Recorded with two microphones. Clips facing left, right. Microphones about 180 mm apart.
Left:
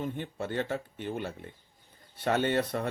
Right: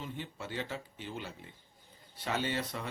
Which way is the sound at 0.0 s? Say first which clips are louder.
Left 7 dB; 55° left (ahead or behind).